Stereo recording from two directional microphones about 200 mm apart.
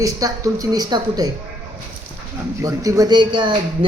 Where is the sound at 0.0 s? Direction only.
15° right (ahead or behind).